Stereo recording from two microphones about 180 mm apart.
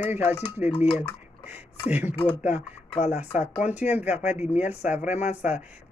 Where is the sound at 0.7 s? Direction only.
30° left (ahead or behind).